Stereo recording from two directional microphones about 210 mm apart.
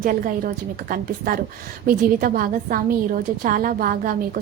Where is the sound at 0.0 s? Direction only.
40° right (ahead or behind).